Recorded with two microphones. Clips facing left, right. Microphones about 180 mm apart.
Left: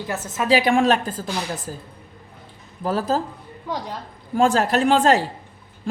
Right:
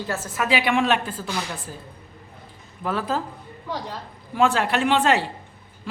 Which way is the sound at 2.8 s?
40° left (ahead or behind).